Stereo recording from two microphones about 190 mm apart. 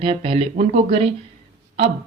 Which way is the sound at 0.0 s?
30° right (ahead or behind).